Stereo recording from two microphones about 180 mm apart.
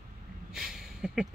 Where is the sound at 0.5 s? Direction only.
5° right (ahead or behind).